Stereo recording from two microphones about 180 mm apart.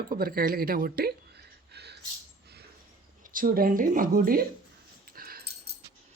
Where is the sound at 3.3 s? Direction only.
55° right (ahead or behind).